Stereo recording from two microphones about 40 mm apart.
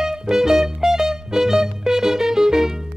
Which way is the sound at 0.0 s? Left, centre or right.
Centre.